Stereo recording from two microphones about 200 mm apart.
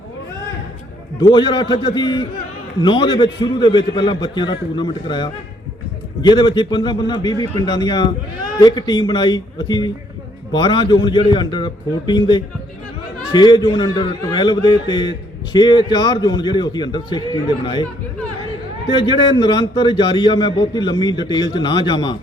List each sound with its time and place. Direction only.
1.2 s a man's voice: 20° left (ahead or behind)
19.0 s a man's voice: 20° left (ahead or behind)